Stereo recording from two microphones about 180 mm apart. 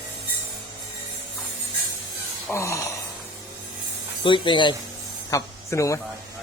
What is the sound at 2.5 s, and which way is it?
Speech, 15° left (ahead or behind).